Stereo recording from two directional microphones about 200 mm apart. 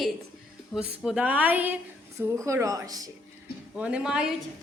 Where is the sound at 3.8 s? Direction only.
5° right (ahead or behind).